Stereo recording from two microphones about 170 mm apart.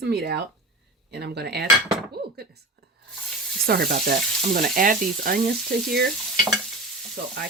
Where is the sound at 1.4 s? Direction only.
70° right (ahead or behind).